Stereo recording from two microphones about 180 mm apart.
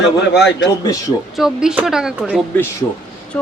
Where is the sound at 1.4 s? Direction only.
5° right (ahead or behind).